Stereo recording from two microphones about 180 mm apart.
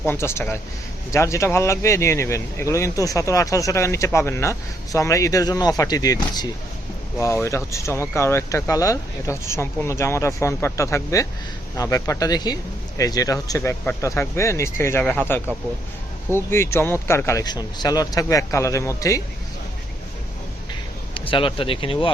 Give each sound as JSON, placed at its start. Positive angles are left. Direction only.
{"t": 0.0, "sound": "speech", "side_deg": 15}
{"t": 21.2, "sound": "speech", "side_deg": 30}